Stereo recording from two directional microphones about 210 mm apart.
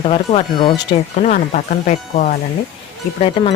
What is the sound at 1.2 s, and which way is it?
Speech, 35° left (ahead or behind).